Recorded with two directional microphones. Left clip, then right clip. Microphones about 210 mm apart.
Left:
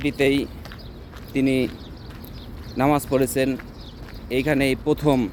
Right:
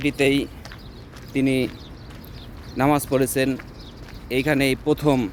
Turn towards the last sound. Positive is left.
turn(degrees=-15)  # may be behind; listen again after turning